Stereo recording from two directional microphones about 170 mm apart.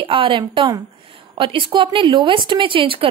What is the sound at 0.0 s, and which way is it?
A woman's voice, 30° right (ahead or behind).